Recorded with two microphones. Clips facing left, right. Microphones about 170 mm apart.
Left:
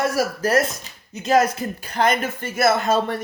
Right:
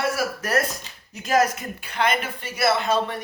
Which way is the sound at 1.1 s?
25° left (ahead or behind).